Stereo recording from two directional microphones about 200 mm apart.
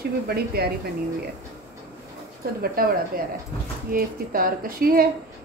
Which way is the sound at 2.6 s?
45° right (ahead or behind).